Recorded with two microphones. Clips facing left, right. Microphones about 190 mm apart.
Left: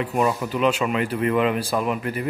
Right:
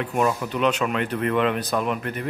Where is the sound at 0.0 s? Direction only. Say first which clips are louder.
Left 1 dB; 5° left (ahead or behind).